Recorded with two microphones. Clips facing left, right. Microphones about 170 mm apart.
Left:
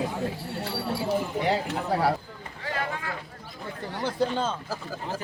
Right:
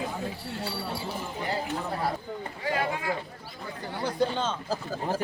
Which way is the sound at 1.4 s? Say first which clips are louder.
Left 5 dB; 80° left.